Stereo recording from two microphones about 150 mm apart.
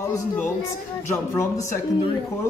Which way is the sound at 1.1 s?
15° left (ahead or behind).